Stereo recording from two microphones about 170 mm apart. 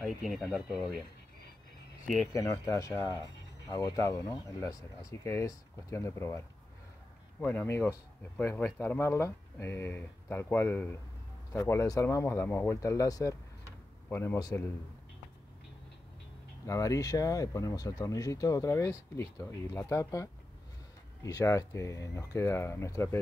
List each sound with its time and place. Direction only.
0.0 s speech: centre (ahead or behind)
2.3 s speech: 20° left (ahead or behind)
16.6 s speech: 20° left (ahead or behind)